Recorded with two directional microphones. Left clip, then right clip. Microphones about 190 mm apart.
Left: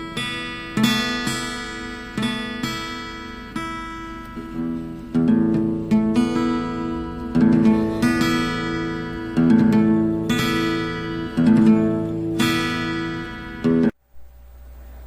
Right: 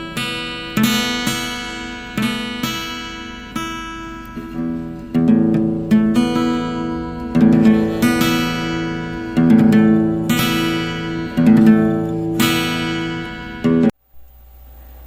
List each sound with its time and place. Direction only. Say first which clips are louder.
0.7 s music: right 3 dB; 40° right (ahead or behind)
5.1 s music: right 4 dB; 35° right (ahead or behind)